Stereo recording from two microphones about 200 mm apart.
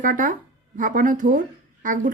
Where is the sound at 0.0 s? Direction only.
40° right (ahead or behind).